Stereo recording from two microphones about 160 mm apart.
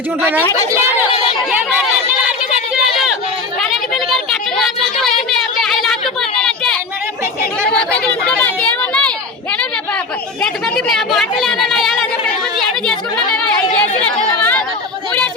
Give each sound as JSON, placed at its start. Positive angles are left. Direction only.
{"t": 0.2, "sound": "speech", "side_deg": -10}
{"t": 1.1, "sound": "speech", "side_deg": 35}
{"t": 2.7, "sound": "a sound", "side_deg": -5}
{"t": 7.7, "sound": "a sound", "side_deg": 5}
{"t": 10.4, "sound": "a woman's voice", "side_deg": 5}
{"t": 12.5, "sound": "chatter", "side_deg": 5}